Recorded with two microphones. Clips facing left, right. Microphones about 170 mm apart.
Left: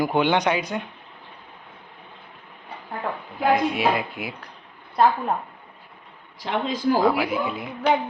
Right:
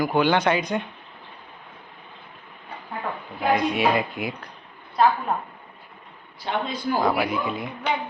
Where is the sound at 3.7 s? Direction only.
Centre (ahead or behind).